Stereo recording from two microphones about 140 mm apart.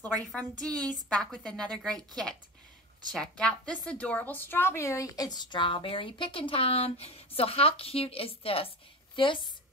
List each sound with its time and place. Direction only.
0.2 s a woman's voice: 5° left (ahead or behind); by 9.5 s 35° left (ahead or behind)